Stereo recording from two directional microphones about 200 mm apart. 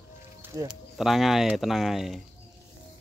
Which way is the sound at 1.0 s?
Centre (ahead or behind).